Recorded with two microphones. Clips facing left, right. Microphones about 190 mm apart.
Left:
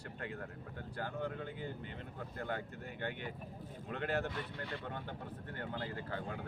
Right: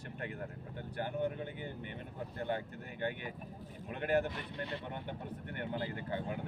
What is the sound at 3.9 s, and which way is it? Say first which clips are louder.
Speech: right 4 dB; 15° right (ahead or behind).